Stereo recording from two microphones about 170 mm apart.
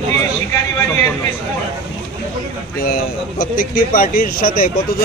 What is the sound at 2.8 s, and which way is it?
A man's voice, 60° left (ahead or behind).